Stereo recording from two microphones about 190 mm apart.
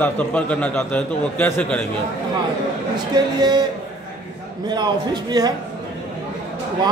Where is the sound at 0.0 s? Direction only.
5° left (ahead or behind).